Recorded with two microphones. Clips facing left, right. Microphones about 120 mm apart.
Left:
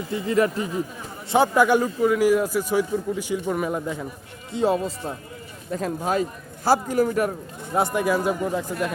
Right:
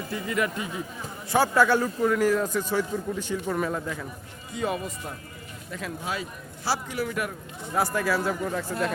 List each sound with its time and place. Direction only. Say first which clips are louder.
0.1 s speech: left 7 dB; 30° left (ahead or behind)
1.3 s speech: left 3 dB; 20° left (ahead or behind)
4.5 s speech: left 7 dB; 30° left (ahead or behind)
5.7 s speech: left 9 dB; 40° left (ahead or behind)
7.7 s speech: left 4 dB; 25° left (ahead or behind)